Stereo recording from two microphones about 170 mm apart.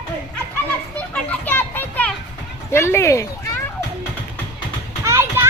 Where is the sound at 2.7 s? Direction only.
15° left (ahead or behind).